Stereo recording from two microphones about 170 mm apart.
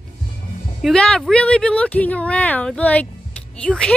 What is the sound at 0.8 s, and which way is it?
Speech, 5° left (ahead or behind).